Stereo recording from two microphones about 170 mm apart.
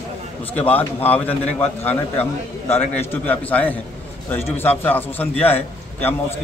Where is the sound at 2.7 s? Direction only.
15° left (ahead or behind).